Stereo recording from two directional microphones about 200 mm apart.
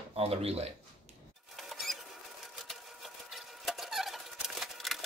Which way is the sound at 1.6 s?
Centre (ahead or behind).